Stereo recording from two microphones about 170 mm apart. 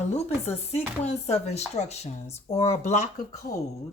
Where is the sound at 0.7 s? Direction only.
40° left (ahead or behind).